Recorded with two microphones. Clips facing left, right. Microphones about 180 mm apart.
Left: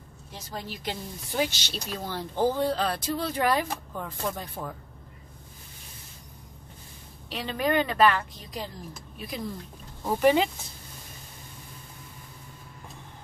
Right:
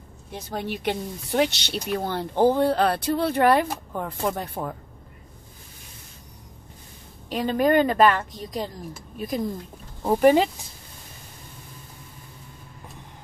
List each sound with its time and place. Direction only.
0.3 s speech: 60° right (ahead or behind)
7.2 s speech: 45° right (ahead or behind)